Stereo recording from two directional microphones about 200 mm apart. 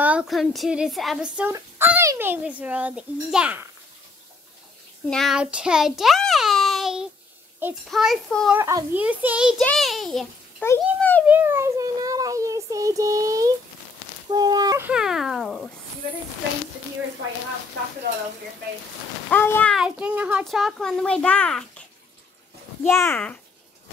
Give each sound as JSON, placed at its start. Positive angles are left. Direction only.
{"t": 0.0, "sound": "speech", "side_deg": -5}
{"t": 5.1, "sound": "a child's voice", "side_deg": 0}
{"t": 8.5, "sound": "a child's voice", "side_deg": -10}
{"t": 10.6, "sound": "a sound", "side_deg": 10}
{"t": 11.2, "sound": "child singing", "side_deg": -10}
{"t": 14.3, "sound": "speech", "side_deg": -20}
{"t": 14.9, "sound": "a child's voice", "side_deg": -5}
{"t": 19.3, "sound": "a child's voice", "side_deg": 10}
{"t": 19.7, "sound": "a child's voice", "side_deg": -5}
{"t": 22.8, "sound": "a child's voice", "side_deg": 10}